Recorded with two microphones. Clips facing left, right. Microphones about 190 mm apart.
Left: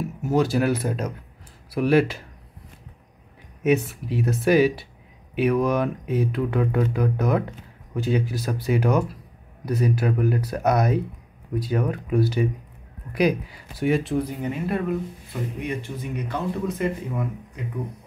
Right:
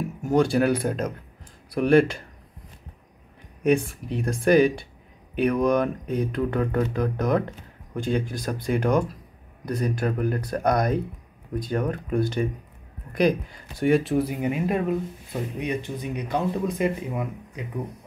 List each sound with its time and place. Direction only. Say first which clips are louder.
0.2 s speech: right 1 dB; 5° left (ahead or behind)
3.6 s speech: even; 5° left (ahead or behind); by 17.3 s 15° right (ahead or behind)